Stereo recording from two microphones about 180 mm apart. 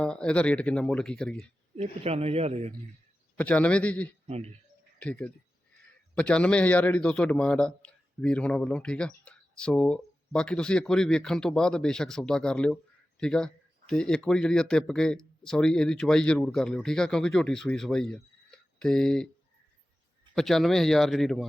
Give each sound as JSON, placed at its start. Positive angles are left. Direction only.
{"t": 0.0, "sound": "a man's voice", "side_deg": 5}
{"t": 1.7, "sound": "a man's voice", "side_deg": -35}
{"t": 3.3, "sound": "a man's voice", "side_deg": 10}
{"t": 4.3, "sound": "a man's voice", "side_deg": -35}
{"t": 4.9, "sound": "a man's voice", "side_deg": 5}
{"t": 20.3, "sound": "a man's voice", "side_deg": 0}